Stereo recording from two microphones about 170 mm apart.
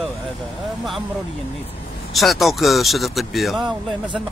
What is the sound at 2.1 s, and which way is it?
Speech, centre (ahead or behind).